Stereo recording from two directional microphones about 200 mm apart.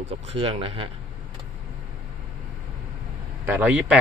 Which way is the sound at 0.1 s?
25° right (ahead or behind).